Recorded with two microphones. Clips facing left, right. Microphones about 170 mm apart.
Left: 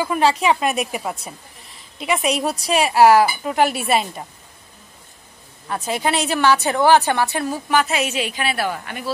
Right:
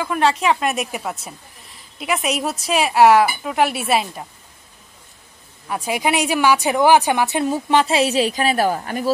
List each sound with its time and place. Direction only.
0.0 s a woman's voice: centre (ahead or behind)
5.7 s a woman's voice: 10° right (ahead or behind); by 9.1 s 40° right (ahead or behind)